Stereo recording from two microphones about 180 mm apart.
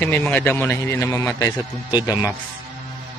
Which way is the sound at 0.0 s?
10° left (ahead or behind).